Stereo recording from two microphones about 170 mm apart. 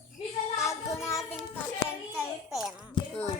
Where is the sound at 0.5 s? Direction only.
15° left (ahead or behind).